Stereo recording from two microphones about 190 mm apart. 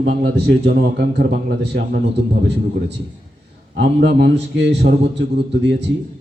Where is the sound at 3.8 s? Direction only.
65° right (ahead or behind).